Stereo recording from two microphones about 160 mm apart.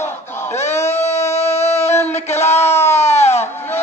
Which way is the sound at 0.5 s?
45° left (ahead or behind).